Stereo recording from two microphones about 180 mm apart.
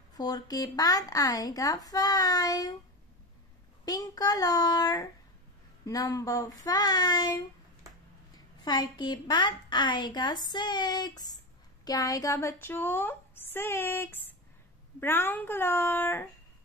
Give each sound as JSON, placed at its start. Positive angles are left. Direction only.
{"t": 0.1, "sound": "a woman's voice", "side_deg": 20}
{"t": 3.8, "sound": "a woman's voice", "side_deg": 20}
{"t": 8.6, "sound": "a woman's voice", "side_deg": 25}